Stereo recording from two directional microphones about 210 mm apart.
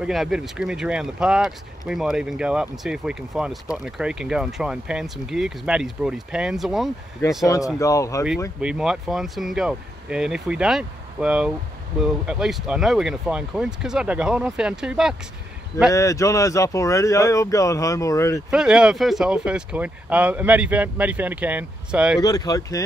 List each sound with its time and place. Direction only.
0.0 s speech: centre (ahead or behind)
7.4 s speech: 15° left (ahead or behind)
8.5 s speech: 5° right (ahead or behind)
15.9 s speech: 15° left (ahead or behind)
18.5 s speech: 5° right (ahead or behind)
22.2 s speech: 15° left (ahead or behind)